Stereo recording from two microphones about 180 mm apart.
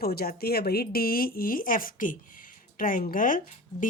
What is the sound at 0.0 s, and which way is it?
A woman's voice, 60° left (ahead or behind).